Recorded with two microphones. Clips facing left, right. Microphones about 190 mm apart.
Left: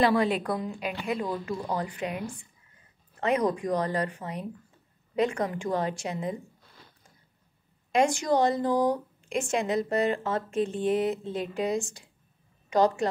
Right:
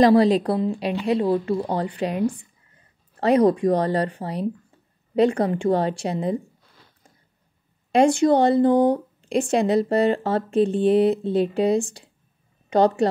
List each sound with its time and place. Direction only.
0.0 s speech: 35° right (ahead or behind)
7.9 s a woman's voice: 30° right (ahead or behind)